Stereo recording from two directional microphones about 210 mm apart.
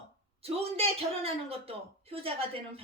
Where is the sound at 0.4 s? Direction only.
30° right (ahead or behind).